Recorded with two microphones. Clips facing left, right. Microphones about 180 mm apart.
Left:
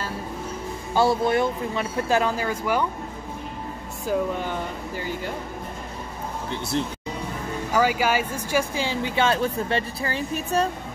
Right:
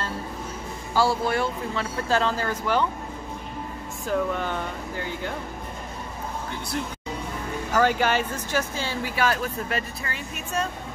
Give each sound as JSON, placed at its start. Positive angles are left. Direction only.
{"t": 0.9, "sound": "speech", "side_deg": 20}
{"t": 4.0, "sound": "speech", "side_deg": 10}
{"t": 6.7, "sound": "speech", "side_deg": 25}
{"t": 7.7, "sound": "speech", "side_deg": 5}